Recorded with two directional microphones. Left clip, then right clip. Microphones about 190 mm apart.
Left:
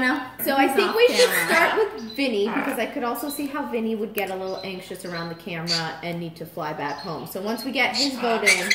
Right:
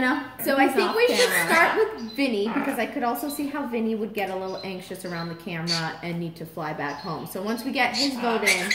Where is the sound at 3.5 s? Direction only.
15° right (ahead or behind).